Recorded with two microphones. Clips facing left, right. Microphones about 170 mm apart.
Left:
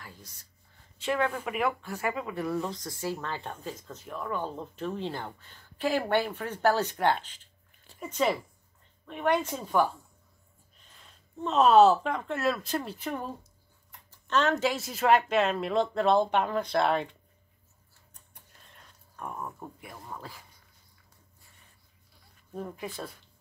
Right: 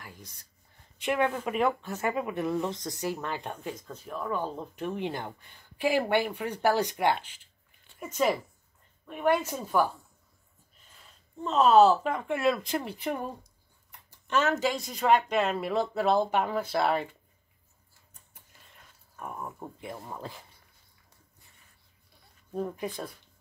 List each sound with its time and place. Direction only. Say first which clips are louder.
0.0 s speech: right 1 dB; 15° right (ahead or behind)
11.4 s speech: even; centre (ahead or behind)
19.6 s speech: right 4 dB; 20° right (ahead or behind)
22.5 s speech: right 4 dB; 15° right (ahead or behind)